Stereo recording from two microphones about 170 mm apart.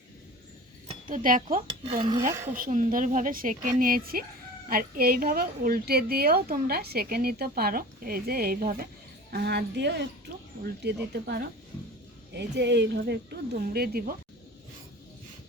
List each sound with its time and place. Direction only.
0.9 s a woman's voice: 50° right (ahead or behind)
9.3 s speech: 75° right (ahead or behind)
10.8 s speech: 75° right (ahead or behind)